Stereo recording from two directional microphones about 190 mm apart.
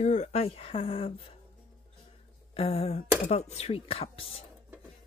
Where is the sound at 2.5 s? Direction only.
30° left (ahead or behind).